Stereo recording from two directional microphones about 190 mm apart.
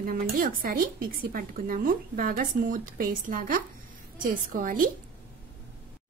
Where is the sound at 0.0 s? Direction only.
50° right (ahead or behind).